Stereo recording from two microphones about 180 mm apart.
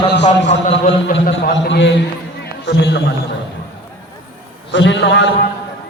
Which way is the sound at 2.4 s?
75° left (ahead or behind).